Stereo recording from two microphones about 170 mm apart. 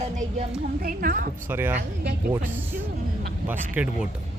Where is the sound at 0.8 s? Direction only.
60° right (ahead or behind).